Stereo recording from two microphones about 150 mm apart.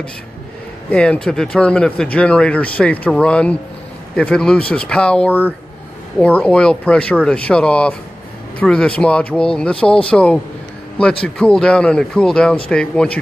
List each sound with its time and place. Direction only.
0.8 s speech: 10° left (ahead or behind)